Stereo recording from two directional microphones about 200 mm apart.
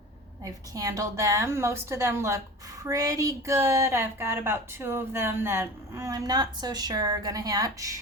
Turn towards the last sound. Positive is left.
turn(degrees=-15)  # may be behind; listen again after turning